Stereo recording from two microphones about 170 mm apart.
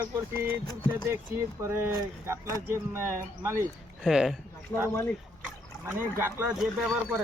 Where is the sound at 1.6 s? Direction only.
15° right (ahead or behind).